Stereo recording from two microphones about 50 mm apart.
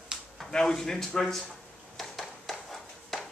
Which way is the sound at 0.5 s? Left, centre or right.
Centre.